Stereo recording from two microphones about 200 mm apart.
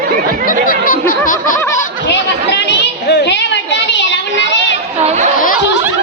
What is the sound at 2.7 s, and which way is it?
Children playing, 60° left (ahead or behind).